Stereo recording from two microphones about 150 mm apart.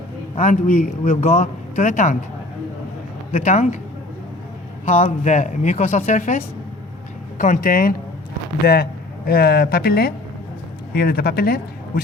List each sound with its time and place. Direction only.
0.3 s a man's voice: 50° left (ahead or behind)
3.3 s a man's voice: 50° left (ahead or behind)
4.9 s a man's voice: 50° left (ahead or behind); by 7.9 s 70° left (ahead or behind)
8.6 s a man's voice: 90° left